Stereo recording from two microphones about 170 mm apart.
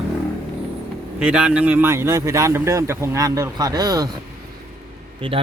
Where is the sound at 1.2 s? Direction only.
5° right (ahead or behind); by 4.1 s 20° right (ahead or behind).